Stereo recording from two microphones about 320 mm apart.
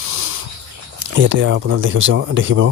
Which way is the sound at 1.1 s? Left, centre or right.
Right.